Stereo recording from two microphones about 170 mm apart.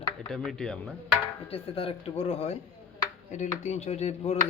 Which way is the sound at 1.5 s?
35° left (ahead or behind).